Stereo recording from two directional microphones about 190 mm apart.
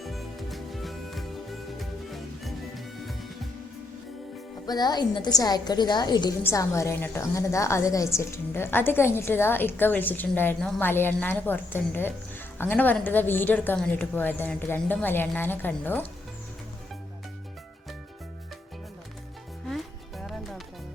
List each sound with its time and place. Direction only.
0.0 s music: centre (ahead or behind)
4.6 s a woman's voice: 20° left (ahead or behind)
19.6 s music: centre (ahead or behind)